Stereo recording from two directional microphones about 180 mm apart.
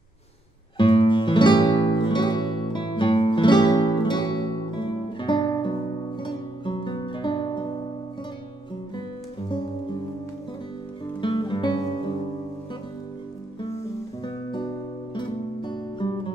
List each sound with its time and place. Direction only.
0.7 s music: 30° left (ahead or behind)
11.1 s music: 25° left (ahead or behind)
14.2 s music: 25° left (ahead or behind)